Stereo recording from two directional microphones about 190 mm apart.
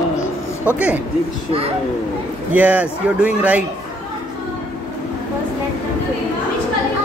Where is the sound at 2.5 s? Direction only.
10° right (ahead or behind).